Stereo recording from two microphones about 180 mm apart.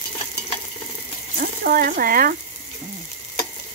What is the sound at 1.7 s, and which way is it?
Stir, 50° right (ahead or behind).